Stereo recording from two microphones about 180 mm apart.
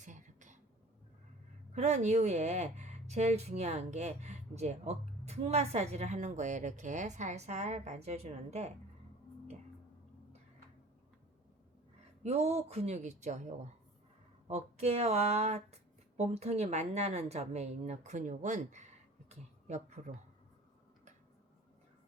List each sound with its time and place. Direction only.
0.0 s a sound: 45° right (ahead or behind)
1.7 s speech: 40° right (ahead or behind)
12.2 s speech: 35° right (ahead or behind)